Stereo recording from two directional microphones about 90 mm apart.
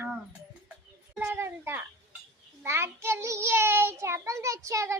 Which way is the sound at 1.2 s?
30° right (ahead or behind).